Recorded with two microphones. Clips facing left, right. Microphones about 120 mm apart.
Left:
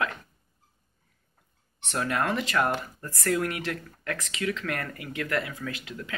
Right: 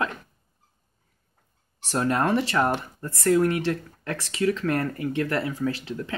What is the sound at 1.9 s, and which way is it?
Speech, 30° right (ahead or behind).